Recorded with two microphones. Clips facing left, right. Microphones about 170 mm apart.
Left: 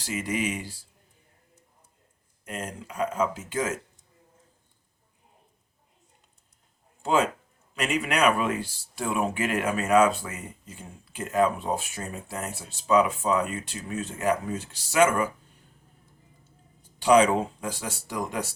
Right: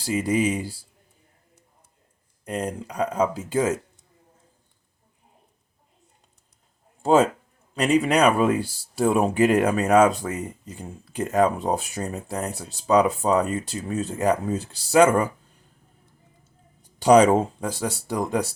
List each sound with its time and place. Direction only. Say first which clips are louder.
0.0 s speech: right 7 dB; 35° right (ahead or behind)
2.4 s speech: right 7 dB; 35° right (ahead or behind)
7.0 s a man's voice: right 6 dB; 40° right (ahead or behind)
17.0 s speech: right 4 dB; 40° right (ahead or behind)